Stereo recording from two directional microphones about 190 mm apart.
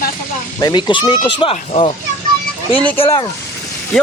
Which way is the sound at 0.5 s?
20° left (ahead or behind).